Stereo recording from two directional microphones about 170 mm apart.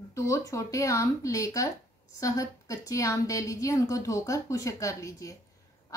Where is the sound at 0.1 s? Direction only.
20° left (ahead or behind).